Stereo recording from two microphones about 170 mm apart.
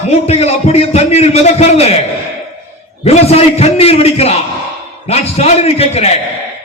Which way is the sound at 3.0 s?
35° left (ahead or behind).